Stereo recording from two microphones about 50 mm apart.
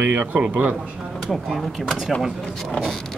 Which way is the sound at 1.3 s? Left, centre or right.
Centre.